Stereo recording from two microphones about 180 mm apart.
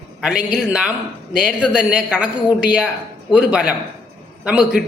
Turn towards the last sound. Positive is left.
turn(degrees=-5)  # may be behind; listen again after turning